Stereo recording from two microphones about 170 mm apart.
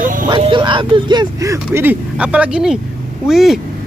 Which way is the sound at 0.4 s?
30° right (ahead or behind).